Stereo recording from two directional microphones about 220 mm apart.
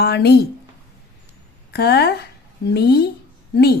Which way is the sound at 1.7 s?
45° left (ahead or behind).